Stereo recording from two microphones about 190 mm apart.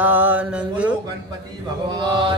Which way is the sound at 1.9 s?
25° right (ahead or behind).